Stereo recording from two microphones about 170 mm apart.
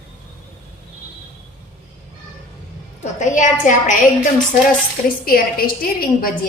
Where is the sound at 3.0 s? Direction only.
45° left (ahead or behind).